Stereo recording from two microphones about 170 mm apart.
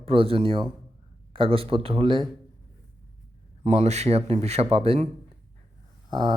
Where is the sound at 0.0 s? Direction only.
35° right (ahead or behind).